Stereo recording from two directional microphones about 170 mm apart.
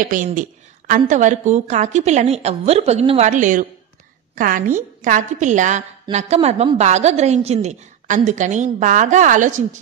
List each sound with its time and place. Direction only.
0.1 s a woman's voice: 50° right (ahead or behind)